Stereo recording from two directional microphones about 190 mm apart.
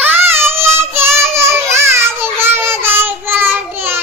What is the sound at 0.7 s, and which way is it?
Child singing, 10° right (ahead or behind).